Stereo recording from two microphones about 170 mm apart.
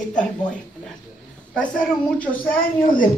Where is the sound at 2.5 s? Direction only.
55° left (ahead or behind).